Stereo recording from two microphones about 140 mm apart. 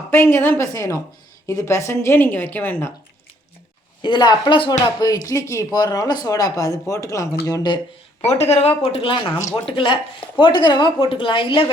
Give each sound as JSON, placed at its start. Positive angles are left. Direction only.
{"t": 0.1, "sound": "a woman's voice", "side_deg": 15}
{"t": 4.0, "sound": "speech", "side_deg": 35}
{"t": 8.2, "sound": "speech", "side_deg": 50}
{"t": 9.3, "sound": "speech", "side_deg": 20}
{"t": 9.6, "sound": "a woman's voice", "side_deg": 35}